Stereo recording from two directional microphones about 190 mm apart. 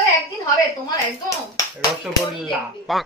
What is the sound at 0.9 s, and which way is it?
Speech, 20° left (ahead or behind).